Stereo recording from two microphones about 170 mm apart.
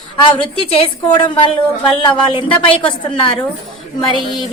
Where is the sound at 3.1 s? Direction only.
30° left (ahead or behind).